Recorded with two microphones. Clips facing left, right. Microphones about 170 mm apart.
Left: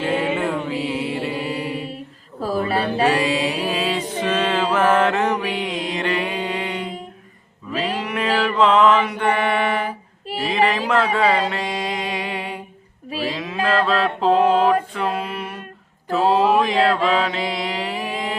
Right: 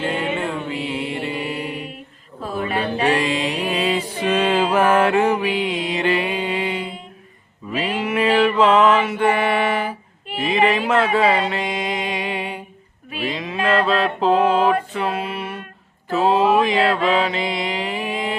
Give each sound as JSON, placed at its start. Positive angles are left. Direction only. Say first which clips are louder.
{"t": 0.0, "sound": "mantra", "louder": "left 2 dB", "side_deg": 5}
{"t": 2.4, "sound": "a sound", "louder": "left 2 dB", "side_deg": 35}
{"t": 3.1, "sound": "mantra", "louder": "even", "side_deg": 10}
{"t": 4.1, "sound": "mantra", "louder": "right 2 dB", "side_deg": -10}